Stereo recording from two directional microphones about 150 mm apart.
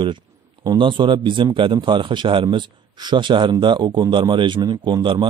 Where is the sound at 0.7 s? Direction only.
30° right (ahead or behind).